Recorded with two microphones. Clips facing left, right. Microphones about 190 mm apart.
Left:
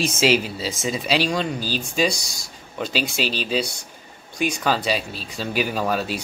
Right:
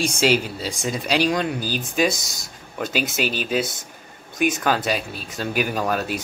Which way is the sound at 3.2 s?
50° right (ahead or behind).